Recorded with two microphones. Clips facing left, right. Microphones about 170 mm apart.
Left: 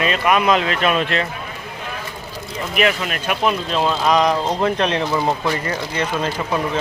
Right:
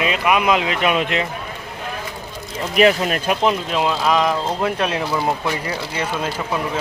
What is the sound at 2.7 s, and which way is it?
Speech, 35° right (ahead or behind).